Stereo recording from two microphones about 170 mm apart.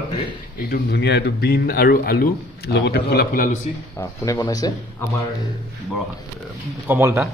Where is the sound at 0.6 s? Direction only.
65° left (ahead or behind).